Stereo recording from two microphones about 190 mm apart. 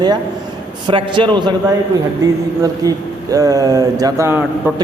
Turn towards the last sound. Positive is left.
turn(degrees=-10)  # may be behind; listen again after turning